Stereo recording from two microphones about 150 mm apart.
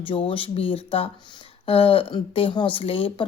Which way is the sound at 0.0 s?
35° left (ahead or behind).